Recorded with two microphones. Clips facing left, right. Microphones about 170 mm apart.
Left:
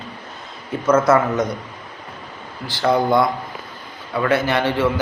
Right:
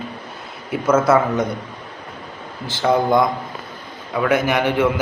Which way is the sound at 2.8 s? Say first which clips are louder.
Even; 15° right (ahead or behind).